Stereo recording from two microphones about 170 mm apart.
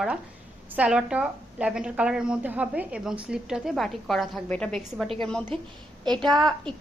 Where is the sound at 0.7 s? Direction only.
5° right (ahead or behind).